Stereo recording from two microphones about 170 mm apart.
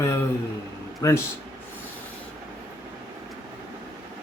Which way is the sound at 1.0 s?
20° left (ahead or behind).